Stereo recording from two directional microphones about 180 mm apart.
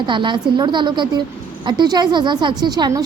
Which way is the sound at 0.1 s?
25° right (ahead or behind).